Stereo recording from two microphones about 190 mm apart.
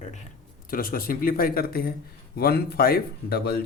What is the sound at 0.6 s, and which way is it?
A man's voice, 50° left (ahead or behind).